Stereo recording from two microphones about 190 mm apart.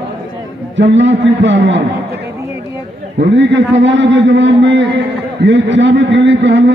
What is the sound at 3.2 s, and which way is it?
A man's voice, 70° right (ahead or behind).